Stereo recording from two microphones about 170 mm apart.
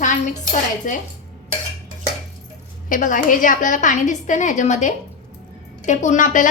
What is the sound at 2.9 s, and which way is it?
A woman's voice, 50° left (ahead or behind).